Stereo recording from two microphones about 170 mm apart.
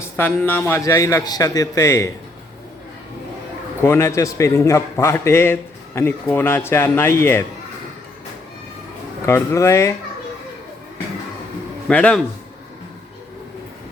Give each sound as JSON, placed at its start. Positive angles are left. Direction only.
{"t": 0.0, "sound": "a man's voice", "side_deg": 10}
{"t": 3.8, "sound": "a man's voice", "side_deg": 15}
{"t": 9.2, "sound": "a man's voice", "side_deg": 15}
{"t": 11.9, "sound": "a man's voice", "side_deg": 5}